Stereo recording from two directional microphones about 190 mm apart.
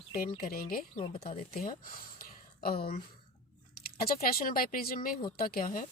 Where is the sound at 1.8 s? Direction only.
50° left (ahead or behind).